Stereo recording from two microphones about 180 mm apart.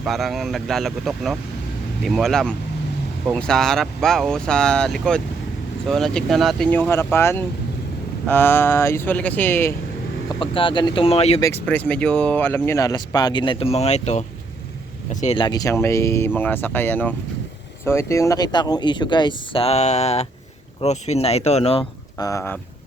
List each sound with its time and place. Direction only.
0.0 s speech: centre (ahead or behind)
10.4 s speech: 30° left (ahead or behind)
11.6 s speech: 10° left (ahead or behind); by 15.4 s 40° left (ahead or behind)
15.4 s speech: 20° left (ahead or behind)
22.2 s speech: 15° left (ahead or behind)